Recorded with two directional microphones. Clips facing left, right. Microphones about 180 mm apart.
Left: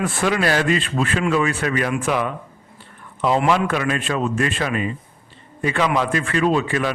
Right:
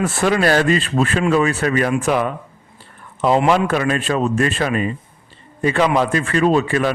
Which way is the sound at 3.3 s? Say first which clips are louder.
Right 3 dB; 35° right (ahead or behind).